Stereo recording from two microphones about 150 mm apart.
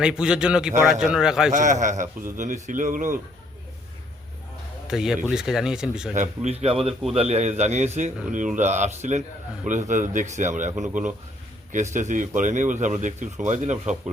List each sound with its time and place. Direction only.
0.0 s speech: 5° right (ahead or behind)
1.5 s speech: 55° right (ahead or behind)
4.9 s speech: 5° right (ahead or behind)
6.1 s a man's voice: 50° right (ahead or behind)